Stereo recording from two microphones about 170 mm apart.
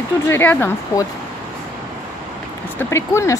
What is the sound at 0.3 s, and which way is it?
Speech, 15° left (ahead or behind).